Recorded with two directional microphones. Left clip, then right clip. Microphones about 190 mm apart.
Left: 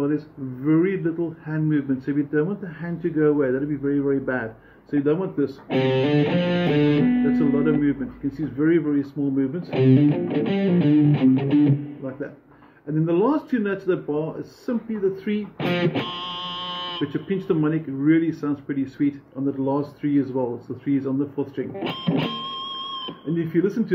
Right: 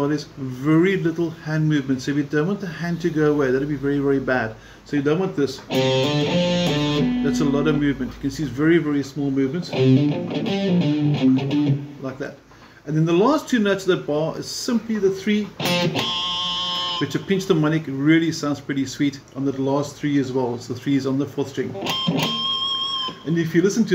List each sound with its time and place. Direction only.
0.7 s speech: centre (ahead or behind)
5.7 s music: 50° left (ahead or behind)
7.2 s speech: centre (ahead or behind)
9.7 s music: 45° left (ahead or behind)
12.9 s speech: centre (ahead or behind)
15.6 s music: 50° left (ahead or behind)
17.0 s speech: centre (ahead or behind)
21.7 s music: 50° left (ahead or behind)
23.3 s speech: 5° left (ahead or behind)